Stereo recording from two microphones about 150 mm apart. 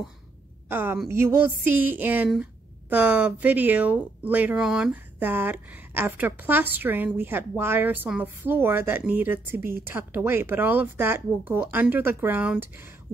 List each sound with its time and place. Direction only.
0.7 s a woman's voice: 15° right (ahead or behind)